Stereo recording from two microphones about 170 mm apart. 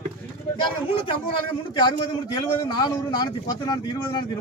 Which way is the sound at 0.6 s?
30° left (ahead or behind).